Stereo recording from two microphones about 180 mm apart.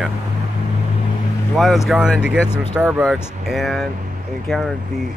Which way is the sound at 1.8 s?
Centre (ahead or behind).